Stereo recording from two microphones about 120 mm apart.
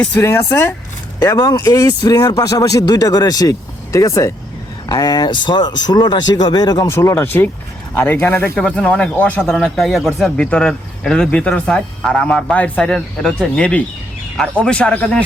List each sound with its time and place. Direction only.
0.2 s speech: 20° left (ahead or behind)
8.5 s speech: 10° left (ahead or behind)
9.4 s speech: centre (ahead or behind)